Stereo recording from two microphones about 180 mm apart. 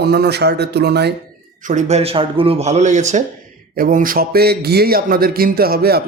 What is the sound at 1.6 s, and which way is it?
Speech, 40° right (ahead or behind).